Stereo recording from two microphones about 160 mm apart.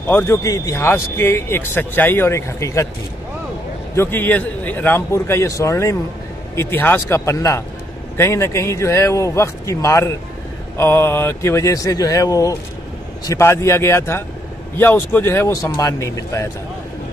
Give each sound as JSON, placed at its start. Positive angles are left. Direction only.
{"t": 0.1, "sound": "speech", "side_deg": 15}
{"t": 3.9, "sound": "speech", "side_deg": 15}